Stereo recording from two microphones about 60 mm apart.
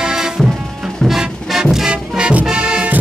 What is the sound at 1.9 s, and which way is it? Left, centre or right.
Music, centre.